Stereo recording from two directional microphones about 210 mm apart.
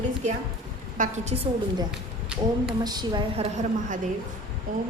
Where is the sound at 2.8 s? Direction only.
20° right (ahead or behind).